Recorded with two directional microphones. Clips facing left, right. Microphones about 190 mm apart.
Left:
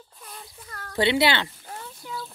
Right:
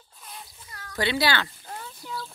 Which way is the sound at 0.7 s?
50° left (ahead or behind).